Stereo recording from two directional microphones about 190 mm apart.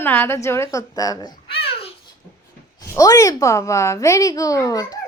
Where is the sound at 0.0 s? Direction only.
10° left (ahead or behind).